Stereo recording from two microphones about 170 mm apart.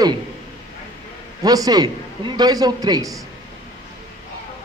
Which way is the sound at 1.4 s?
20° right (ahead or behind).